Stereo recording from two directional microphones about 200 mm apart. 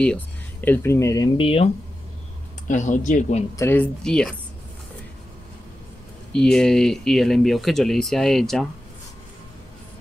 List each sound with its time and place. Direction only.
0.0 s speech: 5° left (ahead or behind); by 1.7 s 30° left (ahead or behind)
2.7 s speech: 40° left (ahead or behind)
3.5 s speech: 10° left (ahead or behind)
6.3 s speech: 5° left (ahead or behind)